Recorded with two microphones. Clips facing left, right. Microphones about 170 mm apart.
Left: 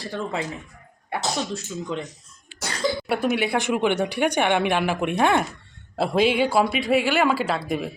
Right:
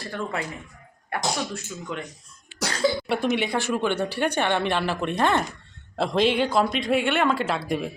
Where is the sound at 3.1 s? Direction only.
5° left (ahead or behind).